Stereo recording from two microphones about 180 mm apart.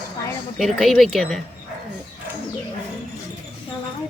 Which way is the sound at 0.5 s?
Centre (ahead or behind).